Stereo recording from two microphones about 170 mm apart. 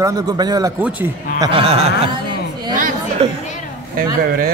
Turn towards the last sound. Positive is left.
turn(degrees=-35)  # may be behind; listen again after turning